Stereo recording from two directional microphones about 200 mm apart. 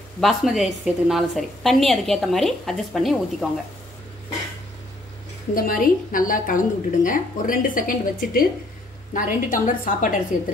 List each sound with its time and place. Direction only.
0.2 s a woman's voice: centre (ahead or behind)
5.5 s a woman's voice: 45° left (ahead or behind)